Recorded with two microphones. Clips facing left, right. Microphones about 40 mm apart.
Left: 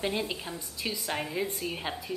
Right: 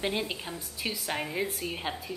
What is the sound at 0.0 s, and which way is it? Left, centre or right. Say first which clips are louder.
A woman's voice: even; centre.